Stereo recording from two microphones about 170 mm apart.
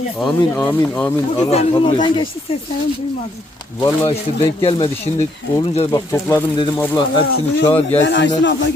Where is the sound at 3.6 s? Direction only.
20° left (ahead or behind).